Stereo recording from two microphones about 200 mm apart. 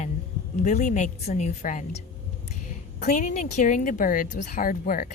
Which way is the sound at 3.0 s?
40° left (ahead or behind).